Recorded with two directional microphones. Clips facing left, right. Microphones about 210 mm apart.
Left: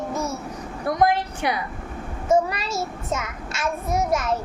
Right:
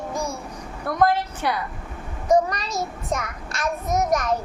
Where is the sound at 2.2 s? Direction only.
5° left (ahead or behind).